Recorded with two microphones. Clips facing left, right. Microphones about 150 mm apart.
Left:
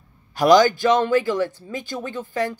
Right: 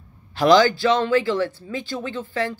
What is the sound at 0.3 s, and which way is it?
A woman's voice, 15° left (ahead or behind).